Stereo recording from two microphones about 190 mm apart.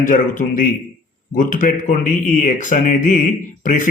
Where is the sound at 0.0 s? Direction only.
45° left (ahead or behind).